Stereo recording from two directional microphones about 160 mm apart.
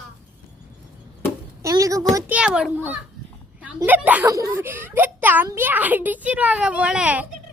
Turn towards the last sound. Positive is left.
turn(degrees=-5)  # may be behind; listen again after turning